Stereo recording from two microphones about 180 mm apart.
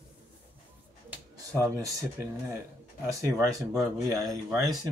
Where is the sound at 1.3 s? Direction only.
20° right (ahead or behind).